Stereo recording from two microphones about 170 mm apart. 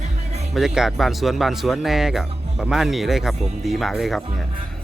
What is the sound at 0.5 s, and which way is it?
Speech, 5° right (ahead or behind).